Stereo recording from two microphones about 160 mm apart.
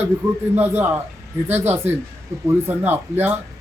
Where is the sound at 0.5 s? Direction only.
10° right (ahead or behind).